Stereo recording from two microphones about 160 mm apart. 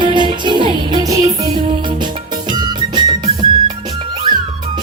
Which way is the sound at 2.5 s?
30° right (ahead or behind).